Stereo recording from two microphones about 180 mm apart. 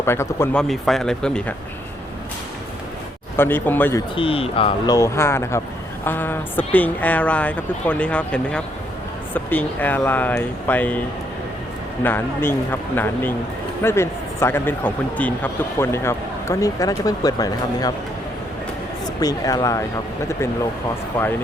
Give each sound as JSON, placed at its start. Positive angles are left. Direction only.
{"t": 0.0, "sound": "speech", "side_deg": 15}
{"t": 0.7, "sound": "speech", "side_deg": 0}
{"t": 3.3, "sound": "speech", "side_deg": 10}
{"t": 4.1, "sound": "speech", "side_deg": 30}
{"t": 4.9, "sound": "speech", "side_deg": 15}
{"t": 12.0, "sound": "speech", "side_deg": 10}
{"t": 19.0, "sound": "speech", "side_deg": 20}
{"t": 21.2, "sound": "speech", "side_deg": 10}